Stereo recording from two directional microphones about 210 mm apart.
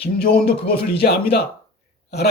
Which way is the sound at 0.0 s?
45° left (ahead or behind).